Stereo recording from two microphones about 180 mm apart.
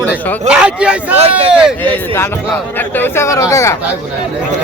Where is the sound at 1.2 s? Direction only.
35° right (ahead or behind).